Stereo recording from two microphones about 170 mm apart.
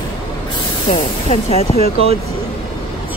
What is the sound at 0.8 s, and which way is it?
Speech, 40° left (ahead or behind).